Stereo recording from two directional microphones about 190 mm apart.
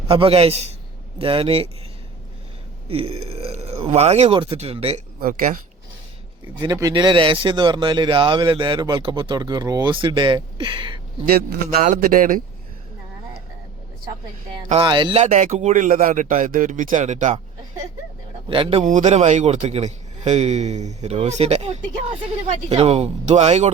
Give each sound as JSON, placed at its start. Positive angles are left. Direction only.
{"t": 0.1, "sound": "a man's voice", "side_deg": -30}
{"t": 2.9, "sound": "a man's voice", "side_deg": -30}
{"t": 5.2, "sound": "a man's voice", "side_deg": -45}
{"t": 6.6, "sound": "speech", "side_deg": -20}
{"t": 11.3, "sound": "a man's voice", "side_deg": -45}
{"t": 14.7, "sound": "speech", "side_deg": -25}
{"t": 15.2, "sound": "a man's voice", "side_deg": -40}
{"t": 18.4, "sound": "speech", "side_deg": -25}
{"t": 18.9, "sound": "a man's voice", "side_deg": -40}